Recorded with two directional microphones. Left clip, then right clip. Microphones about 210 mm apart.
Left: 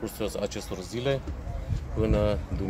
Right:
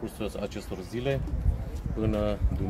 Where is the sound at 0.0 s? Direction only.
25° left (ahead or behind).